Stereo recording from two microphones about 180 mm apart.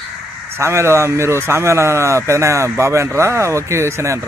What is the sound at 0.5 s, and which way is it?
A man's voice, 15° right (ahead or behind).